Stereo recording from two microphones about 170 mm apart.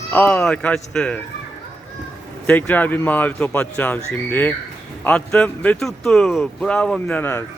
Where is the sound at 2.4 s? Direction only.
10° left (ahead or behind).